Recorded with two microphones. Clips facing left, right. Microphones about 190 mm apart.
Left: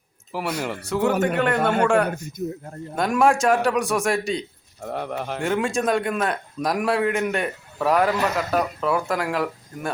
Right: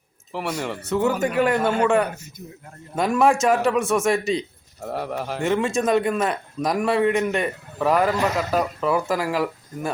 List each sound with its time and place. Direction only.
0.6 s speech: centre (ahead or behind)
2.4 s a man's voice: 40° left (ahead or behind)
2.9 s speech: centre (ahead or behind)